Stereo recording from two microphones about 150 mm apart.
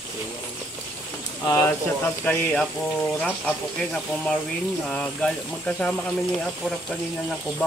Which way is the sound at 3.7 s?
5° left (ahead or behind).